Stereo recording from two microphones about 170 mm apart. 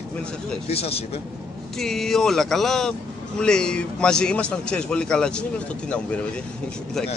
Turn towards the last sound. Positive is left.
turn(degrees=5)  # may be behind; listen again after turning